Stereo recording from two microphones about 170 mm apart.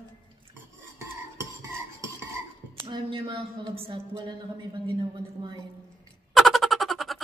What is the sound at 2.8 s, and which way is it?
Speech, 30° right (ahead or behind).